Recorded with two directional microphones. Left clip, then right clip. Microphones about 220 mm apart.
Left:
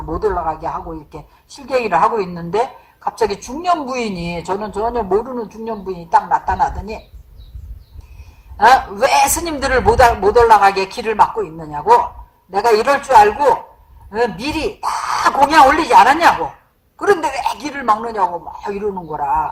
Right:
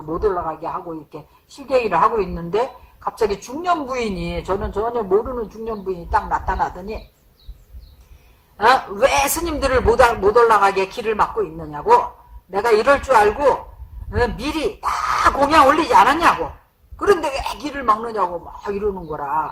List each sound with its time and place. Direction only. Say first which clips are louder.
0.1 s speech: left 2 dB; 25° left (ahead or behind)
8.5 s a man's voice: left 5 dB; 25° left (ahead or behind)
14.4 s speech: left 2 dB; centre (ahead or behind)
14.8 s speech: even; 30° left (ahead or behind)